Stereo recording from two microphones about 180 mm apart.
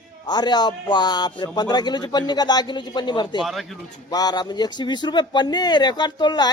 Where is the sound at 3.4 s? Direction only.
Centre (ahead or behind).